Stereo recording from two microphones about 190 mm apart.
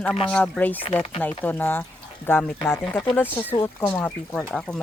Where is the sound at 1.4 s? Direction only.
10° left (ahead or behind).